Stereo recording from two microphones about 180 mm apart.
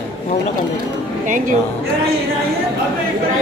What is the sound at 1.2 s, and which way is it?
Speech, 45° right (ahead or behind).